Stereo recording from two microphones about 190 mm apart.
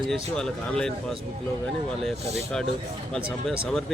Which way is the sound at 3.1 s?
Centre (ahead or behind).